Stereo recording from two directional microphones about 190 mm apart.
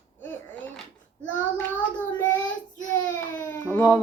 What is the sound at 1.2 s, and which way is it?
Child singing, 10° left (ahead or behind).